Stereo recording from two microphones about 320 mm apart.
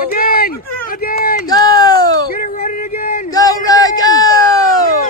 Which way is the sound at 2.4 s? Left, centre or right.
Left.